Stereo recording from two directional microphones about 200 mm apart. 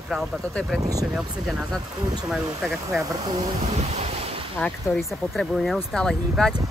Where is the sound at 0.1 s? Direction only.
Centre (ahead or behind).